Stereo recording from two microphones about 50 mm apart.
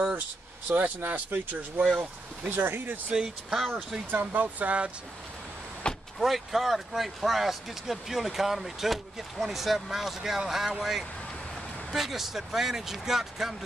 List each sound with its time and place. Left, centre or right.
0.7 s speech: right
1.8 s speech: centre
2.5 s speech: right
3.1 s speech: centre
4.1 s speech: right
6.1 s speech: centre